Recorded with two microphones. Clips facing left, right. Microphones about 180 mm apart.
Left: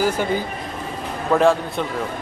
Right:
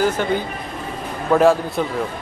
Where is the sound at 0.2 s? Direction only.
10° left (ahead or behind).